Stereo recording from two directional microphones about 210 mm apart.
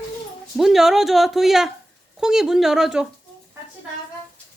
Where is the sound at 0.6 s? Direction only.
Centre (ahead or behind).